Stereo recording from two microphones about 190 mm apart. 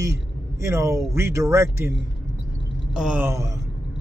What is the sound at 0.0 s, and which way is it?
Speech, 15° right (ahead or behind).